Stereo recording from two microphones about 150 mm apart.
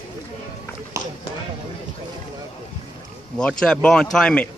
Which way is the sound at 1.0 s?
20° right (ahead or behind).